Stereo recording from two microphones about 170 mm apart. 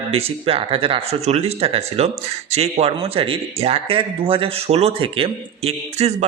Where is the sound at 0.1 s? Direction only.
35° right (ahead or behind).